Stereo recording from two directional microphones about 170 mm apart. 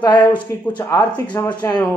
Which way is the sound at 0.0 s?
25° left (ahead or behind).